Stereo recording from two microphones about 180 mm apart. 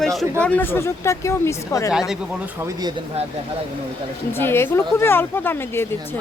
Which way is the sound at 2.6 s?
15° right (ahead or behind).